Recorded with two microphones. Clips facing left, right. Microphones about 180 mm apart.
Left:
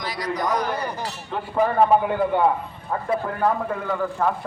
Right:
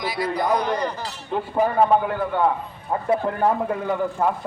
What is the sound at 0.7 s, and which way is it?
Speech, 10° left (ahead or behind).